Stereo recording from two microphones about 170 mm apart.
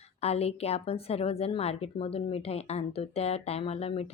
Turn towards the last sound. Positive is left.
turn(degrees=35)  # may be behind; listen again after turning